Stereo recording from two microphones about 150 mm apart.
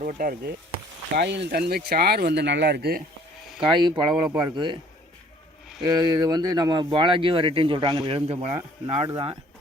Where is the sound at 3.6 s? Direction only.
30° right (ahead or behind).